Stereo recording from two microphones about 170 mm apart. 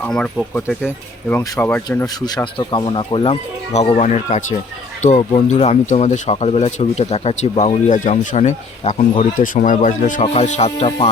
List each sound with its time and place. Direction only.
0.0 s speech: 5° left (ahead or behind); by 11.1 s 35° left (ahead or behind)